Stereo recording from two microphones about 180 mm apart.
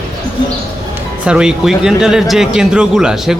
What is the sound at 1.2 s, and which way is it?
Speech, 5° right (ahead or behind).